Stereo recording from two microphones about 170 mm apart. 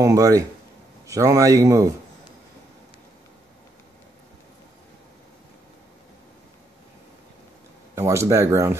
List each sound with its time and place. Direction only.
0.0 s speech: 20° right (ahead or behind)
7.9 s speech: 15° right (ahead or behind)